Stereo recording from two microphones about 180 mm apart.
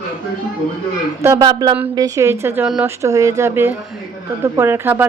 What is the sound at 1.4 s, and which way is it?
Speech, 25° right (ahead or behind).